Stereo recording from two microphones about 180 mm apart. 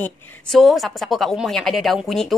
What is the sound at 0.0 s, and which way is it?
A woman's voice, centre (ahead or behind).